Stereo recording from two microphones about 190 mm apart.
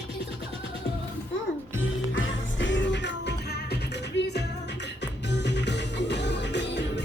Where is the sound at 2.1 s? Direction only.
80° left.